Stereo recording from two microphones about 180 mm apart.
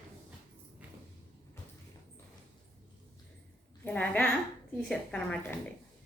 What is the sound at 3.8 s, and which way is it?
A woman's voice, 5° left (ahead or behind).